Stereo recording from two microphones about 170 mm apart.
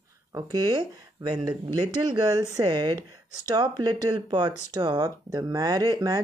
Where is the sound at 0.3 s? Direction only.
25° right (ahead or behind).